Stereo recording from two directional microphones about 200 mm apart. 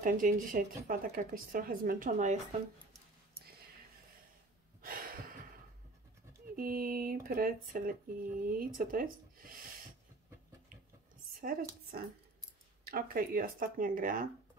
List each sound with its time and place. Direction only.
0.0 s speech: 45° right (ahead or behind)
6.5 s speech: 45° right (ahead or behind)
11.4 s speech: 45° right (ahead or behind)